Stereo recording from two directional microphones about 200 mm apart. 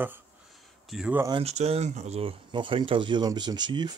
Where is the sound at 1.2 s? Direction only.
30° right (ahead or behind).